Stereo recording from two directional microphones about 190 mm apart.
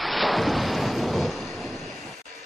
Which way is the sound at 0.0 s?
Centre (ahead or behind).